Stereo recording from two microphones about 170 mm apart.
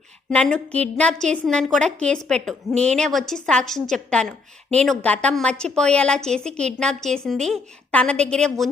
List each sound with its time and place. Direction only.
0.3 s a woman's voice: 5° left (ahead or behind)
2.7 s a woman's voice: 40° right (ahead or behind)
3.0 s a woman's voice: centre (ahead or behind)